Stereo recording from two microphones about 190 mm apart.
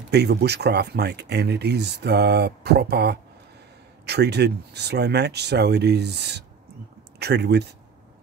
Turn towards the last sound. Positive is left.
turn(degrees=-60)  # may be behind; listen again after turning